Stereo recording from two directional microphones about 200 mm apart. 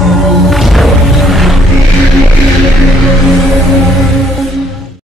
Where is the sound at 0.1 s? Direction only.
Centre (ahead or behind).